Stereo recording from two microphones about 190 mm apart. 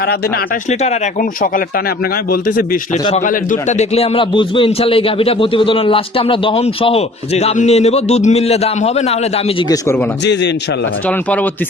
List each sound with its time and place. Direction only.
0.7 s a man's voice: 35° left (ahead or behind)
3.2 s a man's voice: 40° left (ahead or behind)